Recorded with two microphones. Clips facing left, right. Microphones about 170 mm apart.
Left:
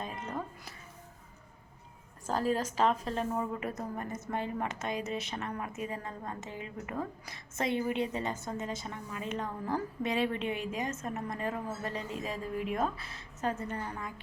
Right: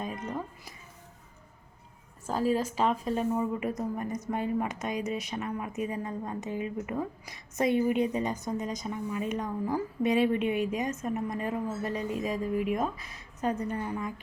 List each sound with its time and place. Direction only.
2.2 s a woman's voice: 5° right (ahead or behind)